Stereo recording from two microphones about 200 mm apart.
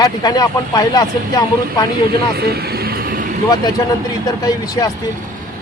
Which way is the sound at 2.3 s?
50° right (ahead or behind).